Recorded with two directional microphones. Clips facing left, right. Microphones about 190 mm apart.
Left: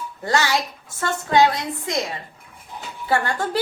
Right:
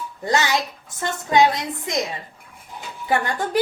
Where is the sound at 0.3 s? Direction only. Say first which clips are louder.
Even; 20° right (ahead or behind).